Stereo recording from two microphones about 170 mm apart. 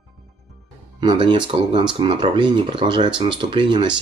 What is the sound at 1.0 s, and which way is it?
Speech, 25° right (ahead or behind).